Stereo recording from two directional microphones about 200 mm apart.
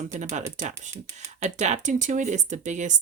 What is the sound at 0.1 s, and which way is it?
Speech, 35° right (ahead or behind).